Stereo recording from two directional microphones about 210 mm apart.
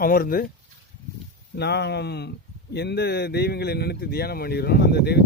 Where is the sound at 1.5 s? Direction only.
50° left (ahead or behind).